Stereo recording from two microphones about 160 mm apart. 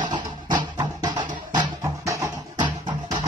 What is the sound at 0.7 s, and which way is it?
Music, 25° right (ahead or behind).